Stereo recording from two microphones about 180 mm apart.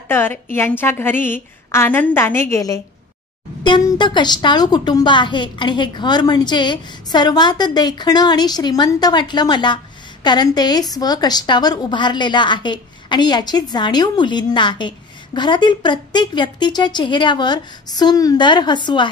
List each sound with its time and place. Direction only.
0.1 s a woman's voice: 10° left (ahead or behind)